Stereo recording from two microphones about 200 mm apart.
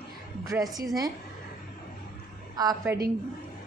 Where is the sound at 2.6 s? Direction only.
20° right (ahead or behind).